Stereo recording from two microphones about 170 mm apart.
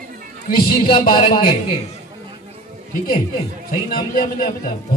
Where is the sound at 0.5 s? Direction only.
60° left (ahead or behind).